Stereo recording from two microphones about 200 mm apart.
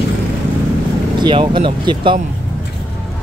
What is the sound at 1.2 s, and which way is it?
Speech, 25° right (ahead or behind).